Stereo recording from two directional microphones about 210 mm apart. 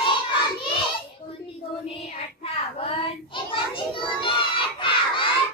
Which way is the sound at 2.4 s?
25° left (ahead or behind).